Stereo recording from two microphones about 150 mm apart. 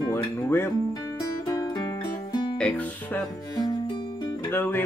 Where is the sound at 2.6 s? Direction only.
10° left (ahead or behind).